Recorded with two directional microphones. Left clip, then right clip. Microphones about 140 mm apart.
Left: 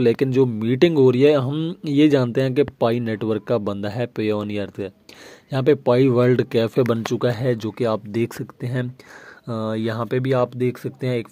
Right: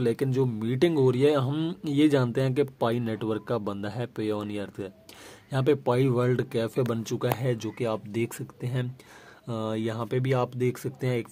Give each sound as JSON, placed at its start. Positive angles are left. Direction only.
{"t": 0.0, "sound": "speech", "side_deg": 40}
{"t": 1.5, "sound": "speech", "side_deg": 15}
{"t": 1.9, "sound": "speech", "side_deg": 35}